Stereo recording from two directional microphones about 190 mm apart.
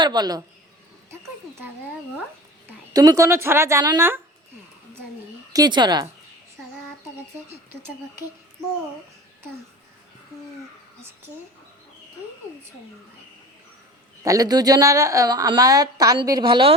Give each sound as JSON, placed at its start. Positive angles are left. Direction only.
{"t": 0.0, "sound": "a woman's voice", "side_deg": -20}
{"t": 2.6, "sound": "speech", "side_deg": -20}
{"t": 5.5, "sound": "a woman's voice", "side_deg": -25}
{"t": 14.3, "sound": "a woman's voice", "side_deg": -20}